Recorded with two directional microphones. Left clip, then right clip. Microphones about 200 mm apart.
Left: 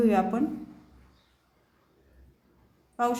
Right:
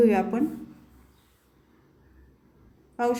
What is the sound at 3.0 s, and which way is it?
Speech, 5° right (ahead or behind).